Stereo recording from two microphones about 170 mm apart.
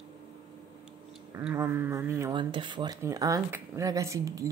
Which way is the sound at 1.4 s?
15° right (ahead or behind).